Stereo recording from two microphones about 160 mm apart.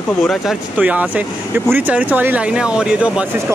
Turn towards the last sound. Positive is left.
turn(degrees=-5)  # may be behind; listen again after turning